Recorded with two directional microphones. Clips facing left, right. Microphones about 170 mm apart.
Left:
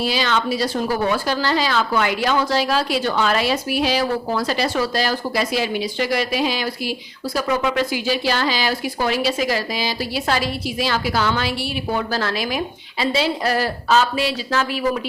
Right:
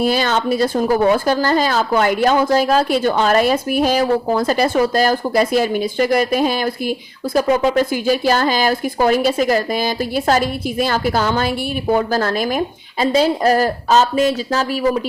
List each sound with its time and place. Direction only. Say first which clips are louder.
0.0 s speech: right 4 dB; 50° right (ahead or behind)
7.4 s speech: right 4 dB; 30° right (ahead or behind)
7.8 s speech: right 5 dB; 50° right (ahead or behind)